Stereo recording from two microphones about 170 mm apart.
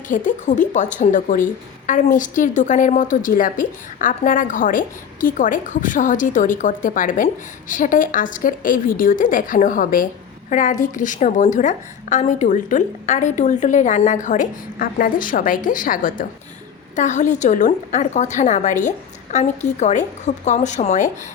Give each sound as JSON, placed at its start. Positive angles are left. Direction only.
{"t": 0.1, "sound": "a woman's voice", "side_deg": 50}